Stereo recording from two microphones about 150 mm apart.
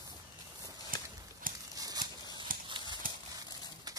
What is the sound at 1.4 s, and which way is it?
Horse, 70° right (ahead or behind).